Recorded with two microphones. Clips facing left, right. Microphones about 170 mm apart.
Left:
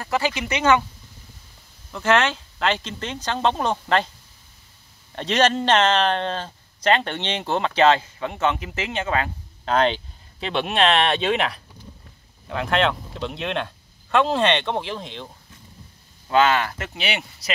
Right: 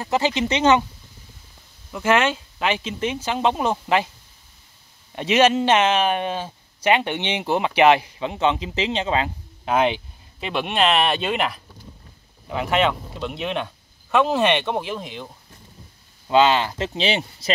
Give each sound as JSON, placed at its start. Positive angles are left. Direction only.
{"t": 0.0, "sound": "speech", "side_deg": -20}
{"t": 1.9, "sound": "speech", "side_deg": -10}
{"t": 5.1, "sound": "speech", "side_deg": -10}
{"t": 16.3, "sound": "speech", "side_deg": -20}